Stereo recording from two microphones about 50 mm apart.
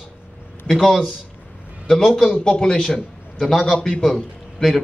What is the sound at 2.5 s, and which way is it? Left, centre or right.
A man's voice, centre.